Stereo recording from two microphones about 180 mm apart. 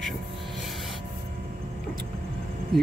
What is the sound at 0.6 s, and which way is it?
Snort, centre (ahead or behind).